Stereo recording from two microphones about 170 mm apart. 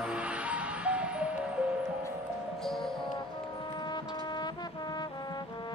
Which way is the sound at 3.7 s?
25° left (ahead or behind).